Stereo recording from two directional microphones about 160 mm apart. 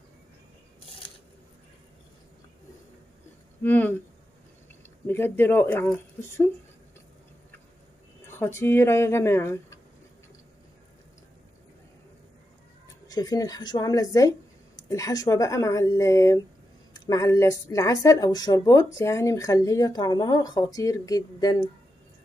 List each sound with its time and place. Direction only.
3.6 s speech: 10° left (ahead or behind)
5.0 s speech: 15° left (ahead or behind)
8.4 s speech: 15° left (ahead or behind)
13.1 s speech: 25° left (ahead or behind)